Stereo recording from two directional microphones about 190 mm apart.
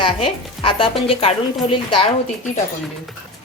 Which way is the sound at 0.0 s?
25° left (ahead or behind).